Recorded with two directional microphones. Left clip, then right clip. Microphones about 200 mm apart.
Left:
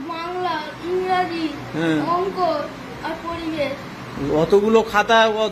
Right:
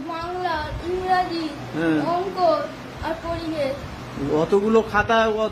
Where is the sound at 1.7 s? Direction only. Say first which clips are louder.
Left 1 dB; centre (ahead or behind).